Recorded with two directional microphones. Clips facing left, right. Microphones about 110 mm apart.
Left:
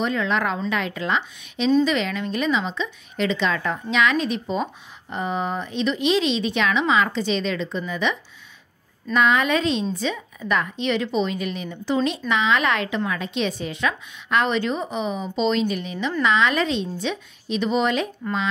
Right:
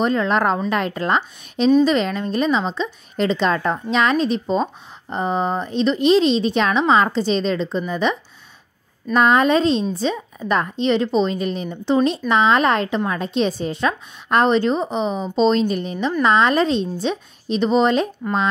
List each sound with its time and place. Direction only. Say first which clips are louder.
0.0 s a woman's voice: right 5 dB; 40° right (ahead or behind)